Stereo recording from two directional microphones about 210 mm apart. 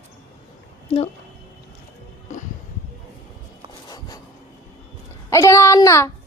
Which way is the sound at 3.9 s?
20° left (ahead or behind).